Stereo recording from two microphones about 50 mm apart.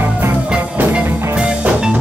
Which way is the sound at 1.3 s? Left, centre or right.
Right.